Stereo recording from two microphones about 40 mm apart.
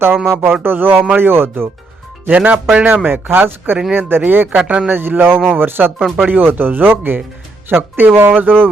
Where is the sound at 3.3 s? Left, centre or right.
Right.